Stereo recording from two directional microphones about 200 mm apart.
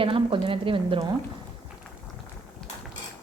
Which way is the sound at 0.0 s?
25° right (ahead or behind).